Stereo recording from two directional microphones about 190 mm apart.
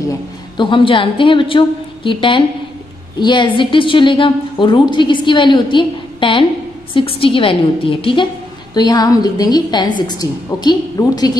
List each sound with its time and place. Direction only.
0.6 s a woman's voice: 25° left (ahead or behind)